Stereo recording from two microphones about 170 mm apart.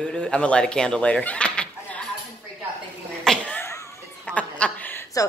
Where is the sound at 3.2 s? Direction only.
5° left (ahead or behind).